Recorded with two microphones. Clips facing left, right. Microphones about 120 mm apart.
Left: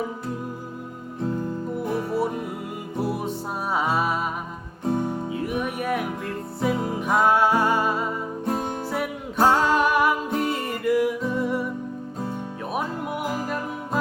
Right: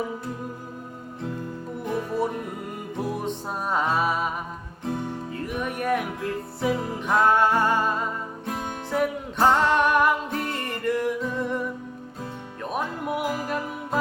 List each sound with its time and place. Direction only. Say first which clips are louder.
1.8 s music: even; 5° left (ahead or behind)
5.3 s music: left 3 dB; 5° left (ahead or behind)
8.4 s music: left 5 dB; 35° left (ahead or behind)
8.9 s music: right 3 dB; 5° left (ahead or behind)
12.7 s music: right 1 dB; centre (ahead or behind)